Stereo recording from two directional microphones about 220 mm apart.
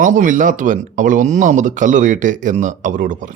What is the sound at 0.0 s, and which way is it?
Speech, 35° right (ahead or behind).